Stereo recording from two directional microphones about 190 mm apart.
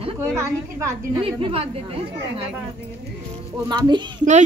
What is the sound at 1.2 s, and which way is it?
Speech, 30° right (ahead or behind).